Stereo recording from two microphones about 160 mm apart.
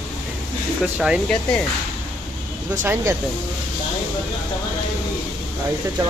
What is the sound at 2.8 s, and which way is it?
Speech, 15° right (ahead or behind).